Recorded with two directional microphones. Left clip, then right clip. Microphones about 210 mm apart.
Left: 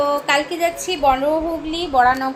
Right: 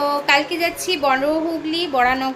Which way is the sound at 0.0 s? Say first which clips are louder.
Even; 10° right (ahead or behind).